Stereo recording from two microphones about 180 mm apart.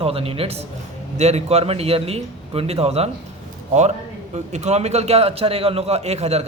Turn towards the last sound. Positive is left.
turn(degrees=-35)  # may be behind; listen again after turning